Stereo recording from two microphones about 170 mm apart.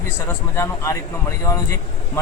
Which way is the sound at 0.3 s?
15° left (ahead or behind).